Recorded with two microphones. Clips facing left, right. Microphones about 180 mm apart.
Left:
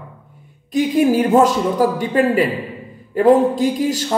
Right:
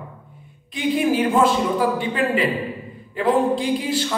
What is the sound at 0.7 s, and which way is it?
A man's voice, 40° left (ahead or behind).